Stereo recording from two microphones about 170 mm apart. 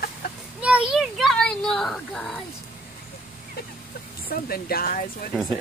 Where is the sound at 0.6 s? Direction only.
5° right (ahead or behind).